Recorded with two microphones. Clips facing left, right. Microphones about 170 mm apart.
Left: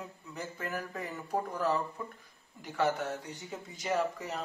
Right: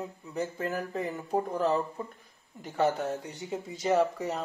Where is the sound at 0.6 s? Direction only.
25° right (ahead or behind).